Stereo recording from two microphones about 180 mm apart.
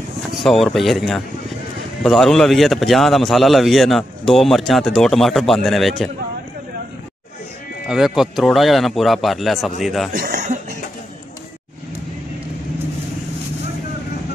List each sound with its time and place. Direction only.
0.4 s a man's voice: centre (ahead or behind)
7.9 s a man's voice: centre (ahead or behind)
10.1 s chuckle: 50° right (ahead or behind)